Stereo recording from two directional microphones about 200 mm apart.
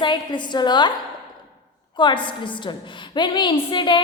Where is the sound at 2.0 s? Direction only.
25° left (ahead or behind).